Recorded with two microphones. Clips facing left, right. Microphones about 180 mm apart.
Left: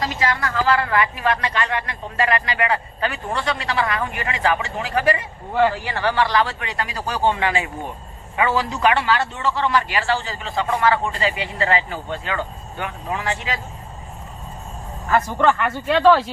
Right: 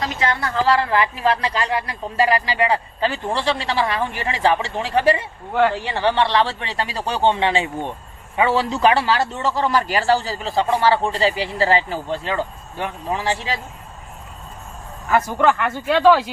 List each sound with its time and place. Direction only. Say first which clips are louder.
0.2 s a man's voice: right 3 dB; 30° right (ahead or behind)
15.1 s speech: right 1 dB; 10° right (ahead or behind)